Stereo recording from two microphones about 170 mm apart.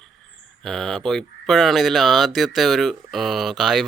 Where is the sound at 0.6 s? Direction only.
Centre (ahead or behind).